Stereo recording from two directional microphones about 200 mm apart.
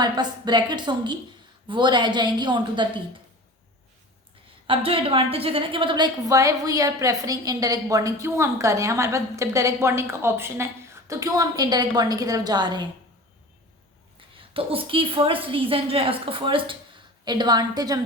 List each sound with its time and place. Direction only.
0.0 s a woman's voice: 20° right (ahead or behind)
4.6 s a woman's voice: 25° right (ahead or behind)
14.2 s a woman's voice: 25° right (ahead or behind)